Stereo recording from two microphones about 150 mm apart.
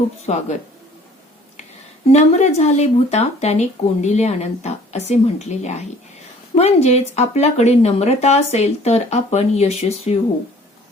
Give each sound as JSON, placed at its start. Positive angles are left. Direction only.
{"t": 0.3, "sound": "speech", "side_deg": 45}
{"t": 2.1, "sound": "speech", "side_deg": 50}